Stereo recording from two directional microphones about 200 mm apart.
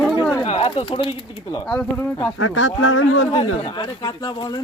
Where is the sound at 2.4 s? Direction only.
80° left.